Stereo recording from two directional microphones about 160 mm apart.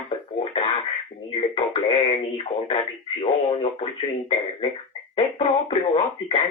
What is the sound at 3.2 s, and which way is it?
Speech, 40° left (ahead or behind).